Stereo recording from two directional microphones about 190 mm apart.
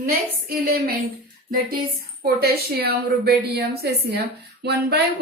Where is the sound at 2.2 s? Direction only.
55° right (ahead or behind).